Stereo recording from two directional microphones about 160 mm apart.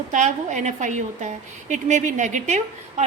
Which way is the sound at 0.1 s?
50° right (ahead or behind).